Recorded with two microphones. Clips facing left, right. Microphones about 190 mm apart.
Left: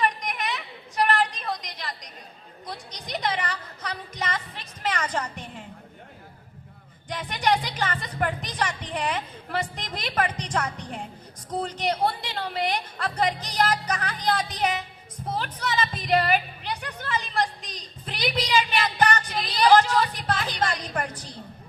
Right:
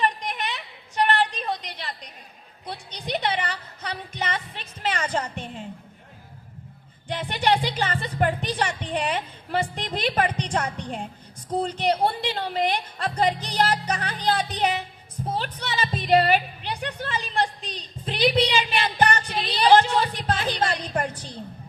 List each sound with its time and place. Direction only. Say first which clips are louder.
0.0 s a sound: right 1 dB; 30° right (ahead or behind)
2.6 s music: right 5 dB; 30° right (ahead or behind)
4.8 s a woman's voice: right 2 dB; 30° right (ahead or behind)
7.1 s a woman's voice: right 2 dB; 30° right (ahead or behind)